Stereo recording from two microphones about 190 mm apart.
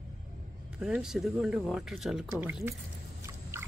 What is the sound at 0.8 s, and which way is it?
Speech, centre (ahead or behind).